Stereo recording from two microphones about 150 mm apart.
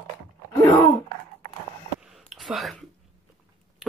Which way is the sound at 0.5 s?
20° left (ahead or behind).